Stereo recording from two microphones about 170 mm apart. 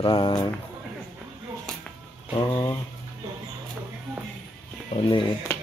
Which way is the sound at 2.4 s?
25° left (ahead or behind).